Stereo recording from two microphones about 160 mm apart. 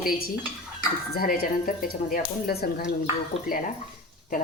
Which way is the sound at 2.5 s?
75° left (ahead or behind).